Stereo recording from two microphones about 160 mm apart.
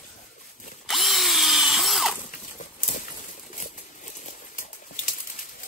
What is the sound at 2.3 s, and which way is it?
Horse, 55° left (ahead or behind).